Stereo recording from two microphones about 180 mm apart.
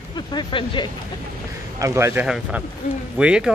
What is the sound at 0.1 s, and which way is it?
Speech, 25° left (ahead or behind).